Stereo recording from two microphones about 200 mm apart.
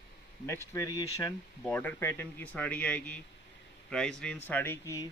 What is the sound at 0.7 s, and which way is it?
Speech, 15° left (ahead or behind).